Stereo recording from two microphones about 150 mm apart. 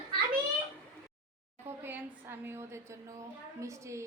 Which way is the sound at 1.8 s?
15° right (ahead or behind).